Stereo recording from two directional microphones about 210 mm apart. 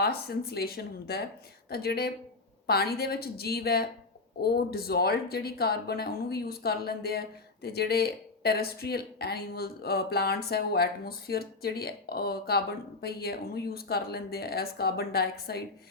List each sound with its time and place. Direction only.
0.0 s speech: 50° left (ahead or behind)